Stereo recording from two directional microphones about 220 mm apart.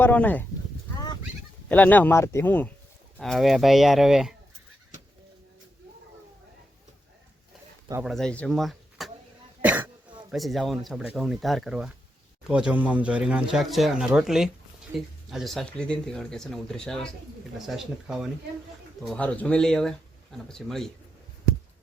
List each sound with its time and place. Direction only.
0.0 s speech: 10° left (ahead or behind)
0.9 s fowl: 20° left (ahead or behind)
1.7 s speech: 5° left (ahead or behind)
8.0 s speech: centre (ahead or behind)
9.6 s throat clearing: 5° right (ahead or behind)
10.3 s speech: centre (ahead or behind)